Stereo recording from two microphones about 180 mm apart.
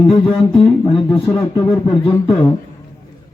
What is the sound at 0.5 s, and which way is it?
Speech, 25° left (ahead or behind).